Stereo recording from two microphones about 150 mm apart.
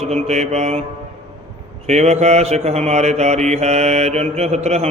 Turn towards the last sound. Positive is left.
turn(degrees=-45)  # may be behind; listen again after turning